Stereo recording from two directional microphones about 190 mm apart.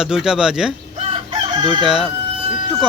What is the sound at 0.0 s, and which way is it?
Speech, 5° right (ahead or behind).